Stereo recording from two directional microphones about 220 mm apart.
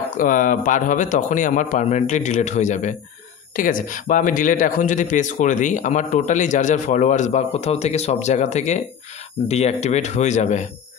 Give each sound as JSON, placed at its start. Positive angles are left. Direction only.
{"t": 0.2, "sound": "speech", "side_deg": 35}